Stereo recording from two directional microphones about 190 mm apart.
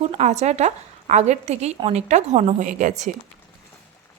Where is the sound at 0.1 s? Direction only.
35° right (ahead or behind).